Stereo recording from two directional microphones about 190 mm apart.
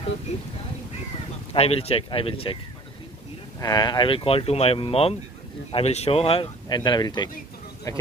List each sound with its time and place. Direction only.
0.3 s speech: 35° left (ahead or behind)
1.5 s speech: 30° left (ahead or behind)